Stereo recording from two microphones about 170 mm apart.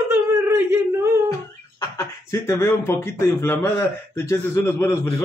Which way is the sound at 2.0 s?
15° left (ahead or behind).